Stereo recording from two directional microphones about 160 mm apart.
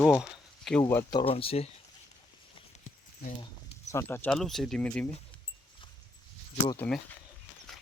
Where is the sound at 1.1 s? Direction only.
35° left (ahead or behind).